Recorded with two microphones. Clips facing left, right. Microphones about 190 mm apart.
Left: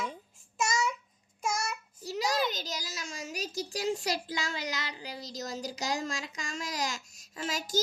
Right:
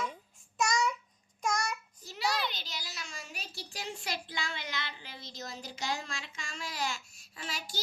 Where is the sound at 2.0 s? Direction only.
40° left (ahead or behind).